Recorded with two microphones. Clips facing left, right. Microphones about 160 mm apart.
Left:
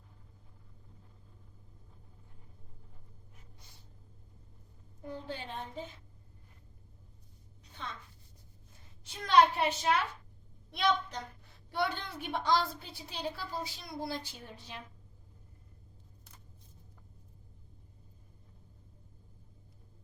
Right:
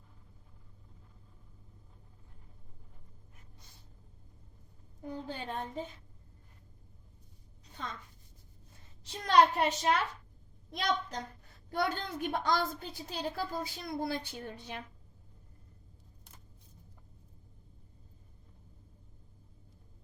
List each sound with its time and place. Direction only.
5.3 s a woman's voice: 45° right (ahead or behind)
7.8 s a woman's voice: 40° right (ahead or behind)
9.2 s a woman's voice: 40° right (ahead or behind); by 14.8 s 60° right (ahead or behind)